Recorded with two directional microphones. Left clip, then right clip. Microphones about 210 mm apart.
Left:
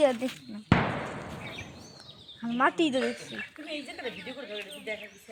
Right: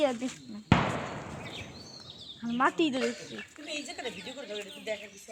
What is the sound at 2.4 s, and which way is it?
Speech, 50° left (ahead or behind).